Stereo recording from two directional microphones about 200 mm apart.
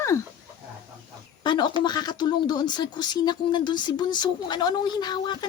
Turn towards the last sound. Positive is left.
turn(degrees=20)  # may be behind; listen again after turning